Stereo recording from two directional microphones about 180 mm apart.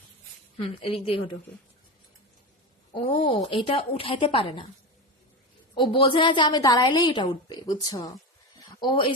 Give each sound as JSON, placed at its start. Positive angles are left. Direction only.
{"t": 0.5, "sound": "a woman's voice", "side_deg": 30}
{"t": 2.9, "sound": "a woman's voice", "side_deg": 25}
{"t": 5.7, "sound": "a woman's voice", "side_deg": 25}
{"t": 8.5, "sound": "a sound", "side_deg": 25}